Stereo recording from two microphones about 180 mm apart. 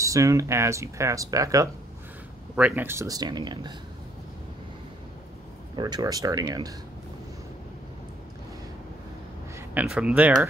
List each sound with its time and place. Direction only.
0.0 s speech: 15° right (ahead or behind)
5.8 s speech: 25° right (ahead or behind)
9.6 s speech: 5° right (ahead or behind)